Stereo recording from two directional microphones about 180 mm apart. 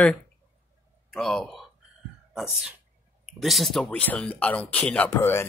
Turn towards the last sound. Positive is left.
turn(degrees=10)  # may be behind; listen again after turning